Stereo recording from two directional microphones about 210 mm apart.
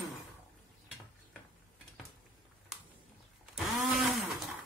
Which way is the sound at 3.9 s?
Centre (ahead or behind).